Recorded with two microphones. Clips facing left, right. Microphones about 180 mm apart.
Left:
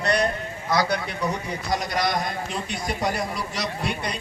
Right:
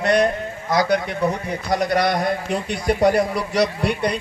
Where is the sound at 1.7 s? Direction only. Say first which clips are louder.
Right 6 dB; 60° right (ahead or behind).